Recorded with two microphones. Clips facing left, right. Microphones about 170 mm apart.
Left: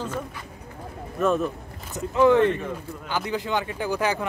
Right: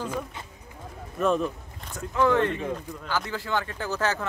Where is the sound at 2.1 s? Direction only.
15° left (ahead or behind).